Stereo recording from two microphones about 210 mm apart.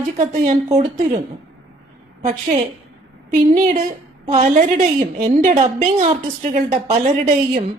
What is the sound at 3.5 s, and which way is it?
A woman's voice, 40° right (ahead or behind).